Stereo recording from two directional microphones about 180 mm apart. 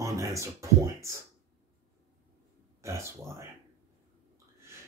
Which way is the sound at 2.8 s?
15° right (ahead or behind).